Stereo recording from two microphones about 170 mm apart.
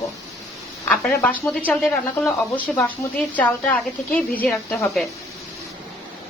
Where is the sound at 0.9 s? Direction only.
5° left (ahead or behind).